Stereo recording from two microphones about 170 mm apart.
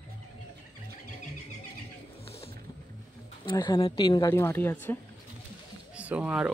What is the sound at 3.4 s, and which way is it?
Speech, 25° left (ahead or behind).